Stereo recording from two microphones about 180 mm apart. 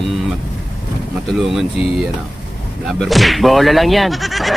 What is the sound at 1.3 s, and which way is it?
Speech, centre (ahead or behind).